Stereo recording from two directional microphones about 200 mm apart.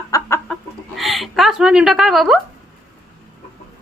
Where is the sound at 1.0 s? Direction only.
Centre (ahead or behind).